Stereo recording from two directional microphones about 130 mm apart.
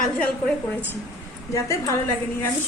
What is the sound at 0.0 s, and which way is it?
A woman's voice, 10° left (ahead or behind).